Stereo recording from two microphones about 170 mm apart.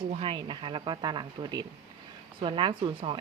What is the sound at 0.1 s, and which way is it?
Speech, 30° right (ahead or behind).